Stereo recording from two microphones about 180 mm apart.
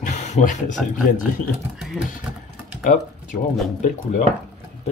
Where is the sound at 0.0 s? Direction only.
45° left (ahead or behind).